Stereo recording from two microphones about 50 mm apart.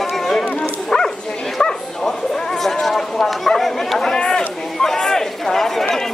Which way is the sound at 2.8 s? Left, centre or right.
Centre.